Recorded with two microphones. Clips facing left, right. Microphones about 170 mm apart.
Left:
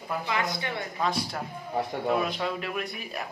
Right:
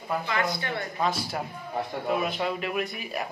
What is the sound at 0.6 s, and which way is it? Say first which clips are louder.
Speech: right 1 dB; 15° left (ahead or behind).